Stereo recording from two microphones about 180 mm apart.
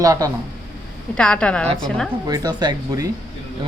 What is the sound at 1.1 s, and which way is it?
Speech, 5° left (ahead or behind).